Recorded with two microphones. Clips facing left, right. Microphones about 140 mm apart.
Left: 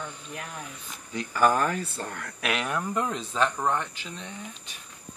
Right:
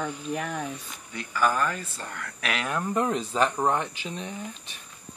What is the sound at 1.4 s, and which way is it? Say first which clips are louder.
Speech: left 2 dB; 45° left (ahead or behind).